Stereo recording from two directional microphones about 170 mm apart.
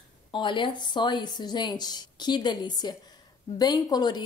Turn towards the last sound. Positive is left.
turn(degrees=25)  # may be behind; listen again after turning